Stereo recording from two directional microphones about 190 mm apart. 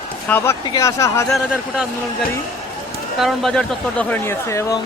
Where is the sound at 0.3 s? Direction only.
10° left (ahead or behind).